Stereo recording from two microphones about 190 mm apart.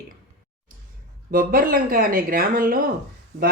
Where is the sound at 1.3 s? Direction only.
50° right (ahead or behind).